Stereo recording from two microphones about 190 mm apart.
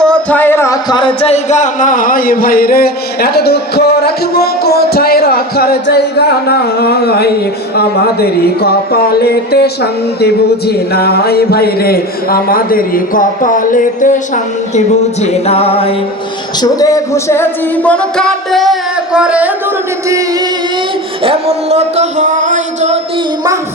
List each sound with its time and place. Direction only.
0.0 s music: 5° left (ahead or behind); by 16.0 s 30° left (ahead or behind)
16.6 s music: 20° left (ahead or behind); by 19.5 s 5° right (ahead or behind)
21.2 s a sound: 35° right (ahead or behind)